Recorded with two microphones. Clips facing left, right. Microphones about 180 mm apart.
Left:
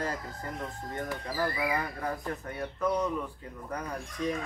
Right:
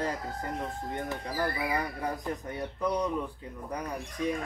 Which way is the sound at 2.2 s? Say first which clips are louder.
Right 1 dB; 15° right (ahead or behind).